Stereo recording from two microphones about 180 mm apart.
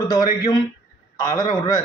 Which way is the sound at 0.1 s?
20° left (ahead or behind).